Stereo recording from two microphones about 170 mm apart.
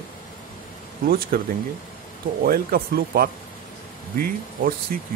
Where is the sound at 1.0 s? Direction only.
60° right (ahead or behind).